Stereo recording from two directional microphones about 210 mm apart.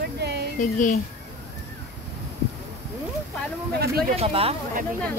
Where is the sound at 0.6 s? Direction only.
40° left (ahead or behind).